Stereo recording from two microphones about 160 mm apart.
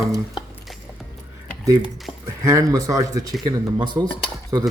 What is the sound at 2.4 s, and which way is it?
Speech, 20° right (ahead or behind).